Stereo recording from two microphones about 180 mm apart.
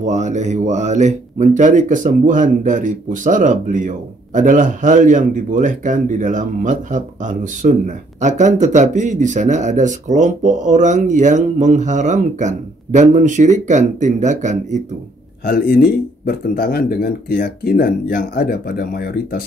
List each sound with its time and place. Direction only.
0.0 s speech: 40° right (ahead or behind)
15.4 s speech: 55° left (ahead or behind)